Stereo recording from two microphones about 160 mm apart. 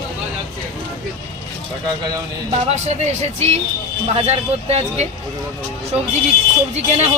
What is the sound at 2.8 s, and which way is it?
Speech, 45° right (ahead or behind).